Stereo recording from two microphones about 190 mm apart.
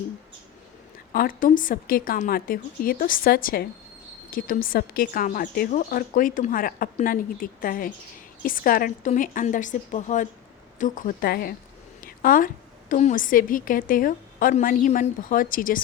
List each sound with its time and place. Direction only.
1.1 s speech: 50° left (ahead or behind)
11.9 s a sound: 45° left (ahead or behind)
12.9 s speech: 40° left (ahead or behind)